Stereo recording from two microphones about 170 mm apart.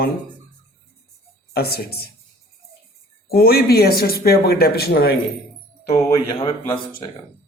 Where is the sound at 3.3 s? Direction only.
65° left (ahead or behind).